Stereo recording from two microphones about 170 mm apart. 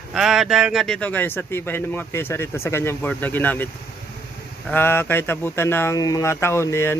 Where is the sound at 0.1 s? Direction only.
Centre (ahead or behind).